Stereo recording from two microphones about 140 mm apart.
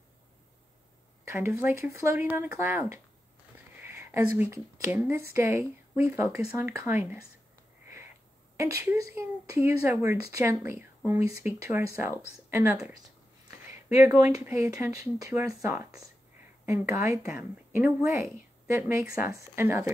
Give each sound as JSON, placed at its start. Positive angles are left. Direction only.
{"t": 1.3, "sound": "speech", "side_deg": -20}
{"t": 3.5, "sound": "a sound", "side_deg": -15}
{"t": 5.3, "sound": "speech", "side_deg": -20}
{"t": 8.5, "sound": "speech", "side_deg": -20}
{"t": 13.9, "sound": "a woman's voice", "side_deg": -25}